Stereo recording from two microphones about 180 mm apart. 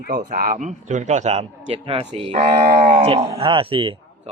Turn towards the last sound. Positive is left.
turn(degrees=-30)  # may be behind; listen again after turning